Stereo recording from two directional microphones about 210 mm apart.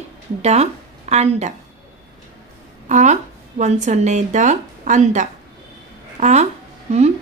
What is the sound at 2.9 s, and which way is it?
A woman's voice, 35° right (ahead or behind).